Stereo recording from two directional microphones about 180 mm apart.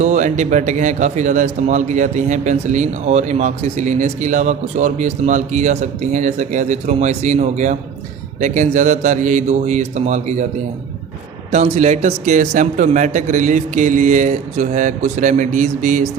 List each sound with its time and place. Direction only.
0.0 s a man's voice: 40° right (ahead or behind)
11.5 s a man's voice: 40° right (ahead or behind)